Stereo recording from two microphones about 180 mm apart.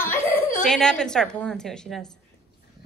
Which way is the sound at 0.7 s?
5° left (ahead or behind).